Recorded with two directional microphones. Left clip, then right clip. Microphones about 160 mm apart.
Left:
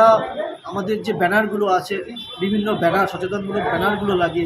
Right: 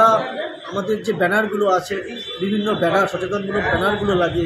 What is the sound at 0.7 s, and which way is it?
A man's voice, 5° right (ahead or behind).